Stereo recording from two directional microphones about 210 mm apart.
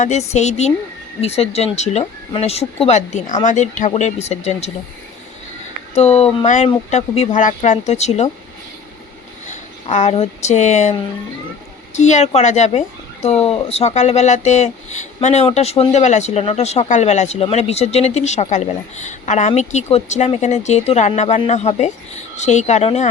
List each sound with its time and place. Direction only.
0.0 s speech: 35° left (ahead or behind)
5.9 s speech: 30° left (ahead or behind)
9.5 s speech: 30° left (ahead or behind)
11.9 s speech: 35° left (ahead or behind)